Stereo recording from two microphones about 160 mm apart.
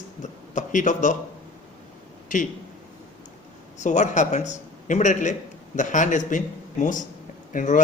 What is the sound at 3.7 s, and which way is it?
A man's voice, 50° left (ahead or behind).